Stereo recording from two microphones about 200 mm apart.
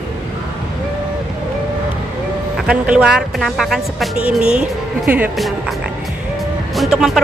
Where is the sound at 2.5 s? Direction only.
5° right (ahead or behind).